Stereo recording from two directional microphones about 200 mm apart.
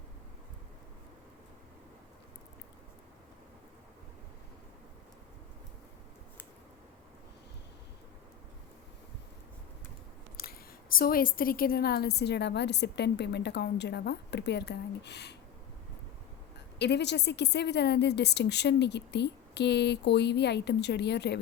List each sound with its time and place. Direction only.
10.4 s a sound: 50° left (ahead or behind)
10.9 s a woman's voice: 45° left (ahead or behind)
16.7 s a woman's voice: 60° left (ahead or behind)